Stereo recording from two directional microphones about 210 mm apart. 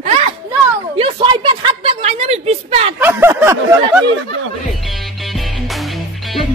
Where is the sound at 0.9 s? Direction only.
25° right (ahead or behind).